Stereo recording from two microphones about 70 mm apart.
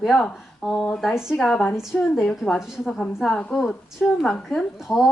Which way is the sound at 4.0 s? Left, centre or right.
Centre.